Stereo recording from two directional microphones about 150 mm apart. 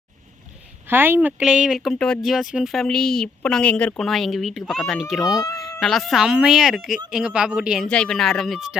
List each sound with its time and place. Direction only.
0.9 s speech: 15° right (ahead or behind)
5.2 s speech: 25° left (ahead or behind)
5.8 s speech: centre (ahead or behind)
7.9 s speech: 5° left (ahead or behind)